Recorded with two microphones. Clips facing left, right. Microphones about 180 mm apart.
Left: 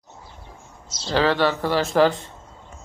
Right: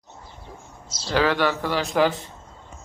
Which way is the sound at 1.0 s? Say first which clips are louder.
Left 1 dB; 35° left (ahead or behind).